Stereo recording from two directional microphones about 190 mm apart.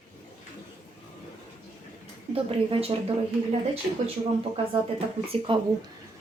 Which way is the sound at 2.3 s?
30° right (ahead or behind).